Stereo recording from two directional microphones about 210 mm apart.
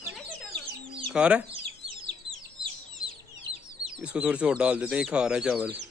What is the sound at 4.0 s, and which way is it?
Speech, 5° right (ahead or behind).